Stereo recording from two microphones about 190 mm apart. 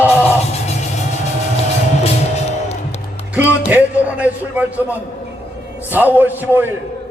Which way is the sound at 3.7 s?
10° right (ahead or behind).